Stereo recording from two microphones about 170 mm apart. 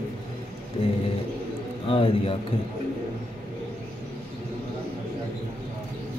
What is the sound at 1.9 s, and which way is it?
Speech, 30° left (ahead or behind).